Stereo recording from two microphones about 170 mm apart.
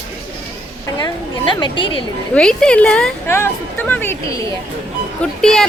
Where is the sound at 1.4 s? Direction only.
30° left (ahead or behind).